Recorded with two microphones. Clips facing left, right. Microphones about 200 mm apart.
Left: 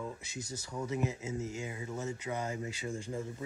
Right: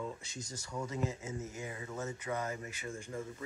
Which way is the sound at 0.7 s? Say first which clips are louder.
Left 2 dB; 15° left (ahead or behind).